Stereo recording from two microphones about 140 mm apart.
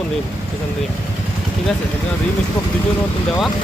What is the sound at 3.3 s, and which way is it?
Speech, centre (ahead or behind).